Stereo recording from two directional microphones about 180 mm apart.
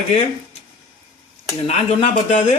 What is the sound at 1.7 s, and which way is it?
Speech, 40° left (ahead or behind).